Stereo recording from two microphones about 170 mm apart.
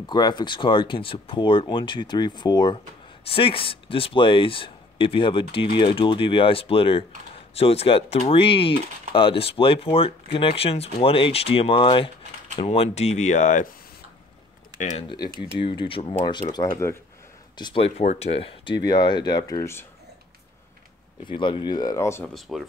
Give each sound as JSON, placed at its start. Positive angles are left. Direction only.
{"t": 0.0, "sound": "speech", "side_deg": 25}
{"t": 14.8, "sound": "speech", "side_deg": 45}
{"t": 15.0, "sound": "speech", "side_deg": 25}
{"t": 18.8, "sound": "speech", "side_deg": 25}
{"t": 21.3, "sound": "speech", "side_deg": 30}
{"t": 22.3, "sound": "speech", "side_deg": 0}